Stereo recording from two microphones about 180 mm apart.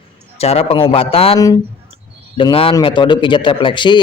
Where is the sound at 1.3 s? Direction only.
20° left (ahead or behind).